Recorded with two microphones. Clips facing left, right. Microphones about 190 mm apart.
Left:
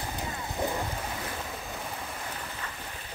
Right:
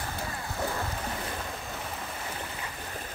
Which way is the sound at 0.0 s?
20° left (ahead or behind).